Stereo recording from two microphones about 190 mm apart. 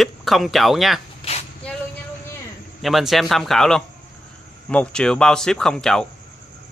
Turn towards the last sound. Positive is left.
turn(degrees=0)  # may be behind; listen again after turning